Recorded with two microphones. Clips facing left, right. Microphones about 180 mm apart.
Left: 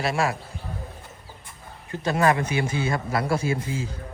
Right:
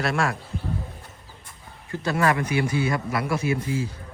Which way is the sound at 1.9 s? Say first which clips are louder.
Left 1 dB; 20° left (ahead or behind).